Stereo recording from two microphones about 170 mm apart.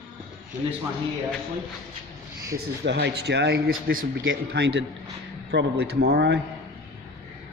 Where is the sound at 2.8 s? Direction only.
85° right; by 3.7 s 70° right (ahead or behind).